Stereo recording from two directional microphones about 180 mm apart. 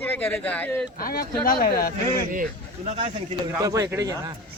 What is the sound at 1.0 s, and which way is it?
Speech, 55° left (ahead or behind).